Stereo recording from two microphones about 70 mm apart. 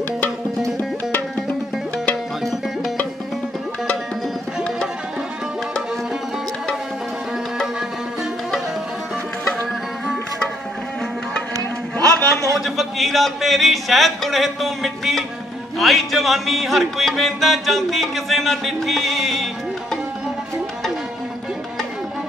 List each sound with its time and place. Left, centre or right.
11.5 s music: right
12.5 s speech: centre
15.8 s music: centre